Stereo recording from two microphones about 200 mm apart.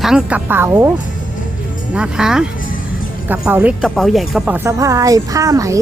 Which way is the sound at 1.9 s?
5° right (ahead or behind).